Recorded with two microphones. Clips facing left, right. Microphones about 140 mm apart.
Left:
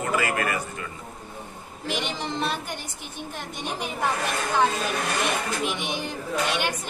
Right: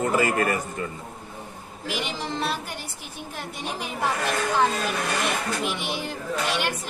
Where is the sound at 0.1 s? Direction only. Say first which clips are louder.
Right 3 dB; 35° right (ahead or behind).